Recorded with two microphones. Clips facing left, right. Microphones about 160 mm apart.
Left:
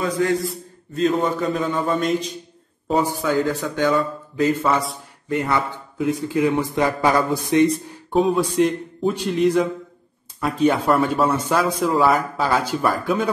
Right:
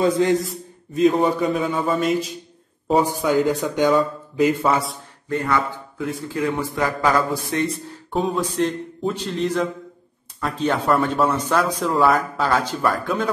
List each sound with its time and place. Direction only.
0.0 s a man's voice: 25° right (ahead or behind)
0.9 s a man's voice: 15° right (ahead or behind)
3.0 s a man's voice: 15° right (ahead or behind)
4.6 s speech: centre (ahead or behind)
5.3 s a man's voice: 20° left (ahead or behind)
8.1 s speech: centre (ahead or behind)
8.4 s a man's voice: 10° left (ahead or behind)